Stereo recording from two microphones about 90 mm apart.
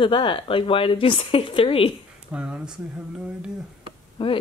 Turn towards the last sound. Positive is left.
turn(degrees=65)  # may be behind; listen again after turning